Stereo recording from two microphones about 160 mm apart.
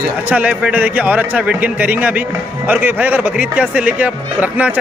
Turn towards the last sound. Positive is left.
turn(degrees=-10)  # may be behind; listen again after turning